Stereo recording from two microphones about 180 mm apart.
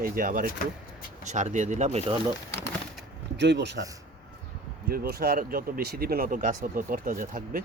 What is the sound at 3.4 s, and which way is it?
Speech, 70° right (ahead or behind).